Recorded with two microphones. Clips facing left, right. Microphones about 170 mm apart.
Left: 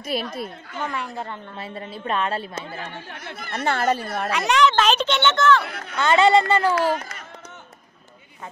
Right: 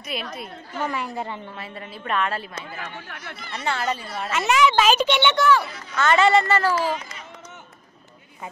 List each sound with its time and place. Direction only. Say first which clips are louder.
0.1 s a woman's voice: left 5 dB; 40° left (ahead or behind)
0.7 s a woman's voice: right 2 dB; 5° right (ahead or behind)
1.6 s a woman's voice: left 3 dB; 30° left (ahead or behind)
3.3 s a woman's voice: left 4 dB; 55° left (ahead or behind)
4.3 s a child's voice: even; 5° right (ahead or behind)
5.7 s speech: left 4 dB; 65° left (ahead or behind)
5.9 s speech: left 1 dB; 20° left (ahead or behind)
6.7 s speech: left 3 dB; 60° left (ahead or behind)